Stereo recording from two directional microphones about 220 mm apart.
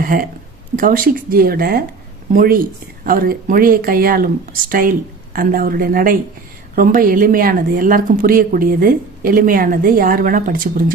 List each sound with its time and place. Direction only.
0.0 s speech: 40° right (ahead or behind)